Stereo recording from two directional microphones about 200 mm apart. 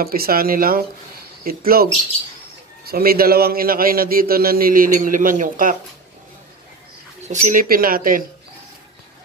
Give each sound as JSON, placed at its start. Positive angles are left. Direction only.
{"t": 0.0, "sound": "a man's voice", "side_deg": -50}
{"t": 7.2, "sound": "a man's voice", "side_deg": -40}